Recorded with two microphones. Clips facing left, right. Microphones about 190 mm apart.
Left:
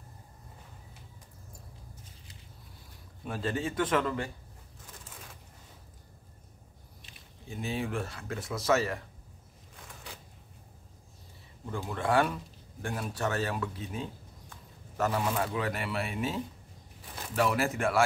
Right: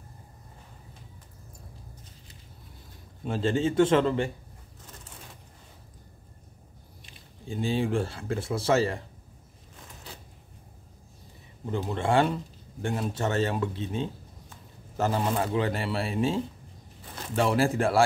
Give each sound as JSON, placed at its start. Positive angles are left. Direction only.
{"t": 3.3, "sound": "speech", "side_deg": -25}
{"t": 7.4, "sound": "speech", "side_deg": -30}
{"t": 11.6, "sound": "speech", "side_deg": -25}